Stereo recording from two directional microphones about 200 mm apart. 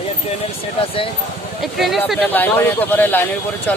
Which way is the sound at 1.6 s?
Centre (ahead or behind).